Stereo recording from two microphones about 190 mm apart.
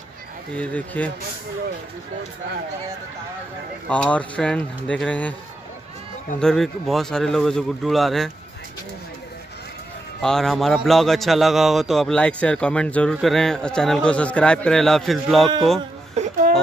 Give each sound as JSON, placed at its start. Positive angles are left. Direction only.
{"t": 0.6, "sound": "speech", "side_deg": 5}
{"t": 3.9, "sound": "speech", "side_deg": 5}
{"t": 6.4, "sound": "a man's voice", "side_deg": 0}
{"t": 10.2, "sound": "a man's voice", "side_deg": 0}
{"t": 16.2, "sound": "a sound", "side_deg": -35}